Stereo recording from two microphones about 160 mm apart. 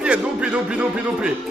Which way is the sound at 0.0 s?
5° right (ahead or behind).